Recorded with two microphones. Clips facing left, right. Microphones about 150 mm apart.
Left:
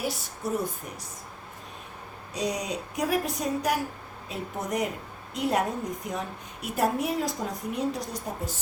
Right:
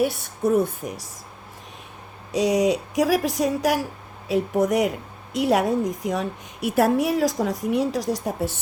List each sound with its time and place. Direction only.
0.0 s a woman's voice: 55° right (ahead or behind)
2.3 s a woman's voice: 90° right